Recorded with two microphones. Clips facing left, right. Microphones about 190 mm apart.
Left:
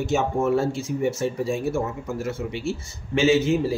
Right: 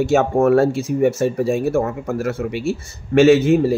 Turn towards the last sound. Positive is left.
turn(degrees=-60)  # may be behind; listen again after turning